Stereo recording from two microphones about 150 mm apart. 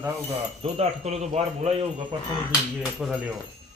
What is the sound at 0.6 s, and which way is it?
Speech, 45° right (ahead or behind).